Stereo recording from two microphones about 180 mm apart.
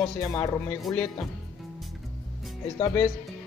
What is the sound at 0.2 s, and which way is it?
Speech, 20° left (ahead or behind).